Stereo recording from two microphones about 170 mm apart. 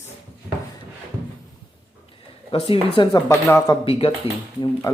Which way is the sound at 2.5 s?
30° left (ahead or behind).